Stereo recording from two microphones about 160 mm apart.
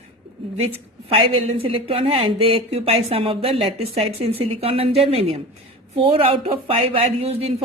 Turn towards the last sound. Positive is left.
turn(degrees=-40)  # may be behind; listen again after turning